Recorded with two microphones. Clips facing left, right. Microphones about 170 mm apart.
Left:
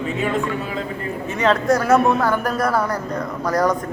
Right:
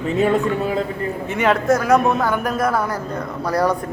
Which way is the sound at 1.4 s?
5° right (ahead or behind).